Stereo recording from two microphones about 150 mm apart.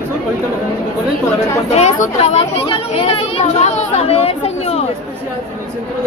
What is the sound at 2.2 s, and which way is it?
Speech, 40° left (ahead or behind).